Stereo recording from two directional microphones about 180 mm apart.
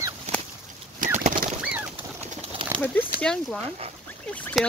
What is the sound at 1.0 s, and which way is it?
Bird, 45° right (ahead or behind).